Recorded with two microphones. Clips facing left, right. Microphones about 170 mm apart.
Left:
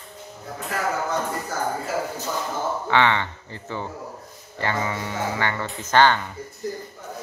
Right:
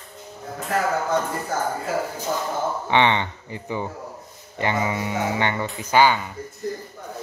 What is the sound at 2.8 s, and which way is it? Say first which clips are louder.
Speech: right 1 dB; 20° right (ahead or behind).